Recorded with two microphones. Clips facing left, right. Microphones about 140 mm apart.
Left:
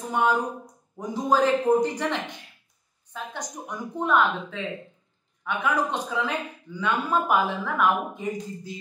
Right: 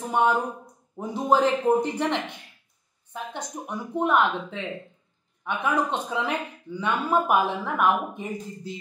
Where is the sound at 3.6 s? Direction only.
20° right (ahead or behind).